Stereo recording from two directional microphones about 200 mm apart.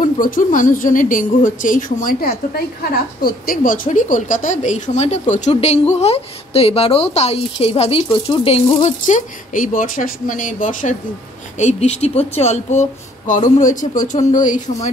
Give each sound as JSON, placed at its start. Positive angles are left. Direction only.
{"t": 0.2, "sound": "speech", "side_deg": 45}